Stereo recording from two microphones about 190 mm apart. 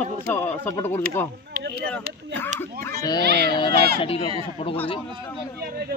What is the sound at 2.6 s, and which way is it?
Speech, 15° left (ahead or behind).